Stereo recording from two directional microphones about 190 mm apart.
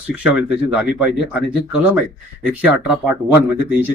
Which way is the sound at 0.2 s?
5° right (ahead or behind).